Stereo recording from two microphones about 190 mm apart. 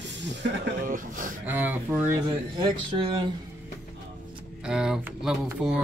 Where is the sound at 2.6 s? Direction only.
25° right (ahead or behind).